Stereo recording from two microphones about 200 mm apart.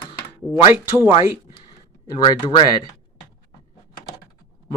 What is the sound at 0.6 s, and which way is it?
Speech, 20° left (ahead or behind).